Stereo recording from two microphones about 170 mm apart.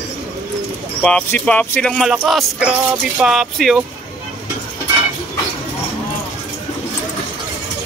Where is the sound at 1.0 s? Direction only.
5° left (ahead or behind).